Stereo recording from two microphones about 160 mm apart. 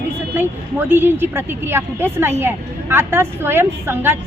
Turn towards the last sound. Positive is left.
turn(degrees=-15)  # may be behind; listen again after turning